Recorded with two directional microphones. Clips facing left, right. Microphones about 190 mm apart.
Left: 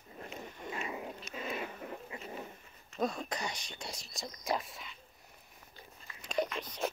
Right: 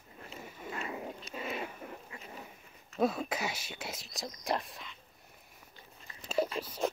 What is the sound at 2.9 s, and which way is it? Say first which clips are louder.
Speech: right 4 dB; 5° right (ahead or behind).